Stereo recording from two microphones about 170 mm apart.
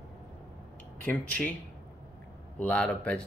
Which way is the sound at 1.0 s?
10° left (ahead or behind).